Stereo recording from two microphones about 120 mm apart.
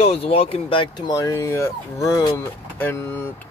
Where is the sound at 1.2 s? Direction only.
20° left (ahead or behind).